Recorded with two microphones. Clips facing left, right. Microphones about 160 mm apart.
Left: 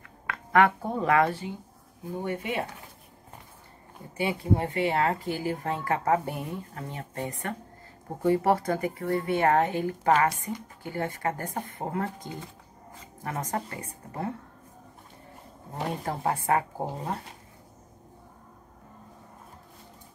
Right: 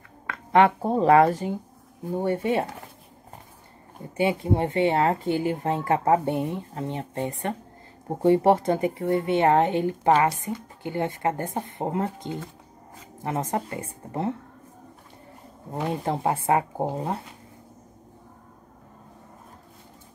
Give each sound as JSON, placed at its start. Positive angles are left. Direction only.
{"t": 0.3, "sound": "speech", "side_deg": -25}
{"t": 4.2, "sound": "speech", "side_deg": -25}
{"t": 15.7, "sound": "speech", "side_deg": -25}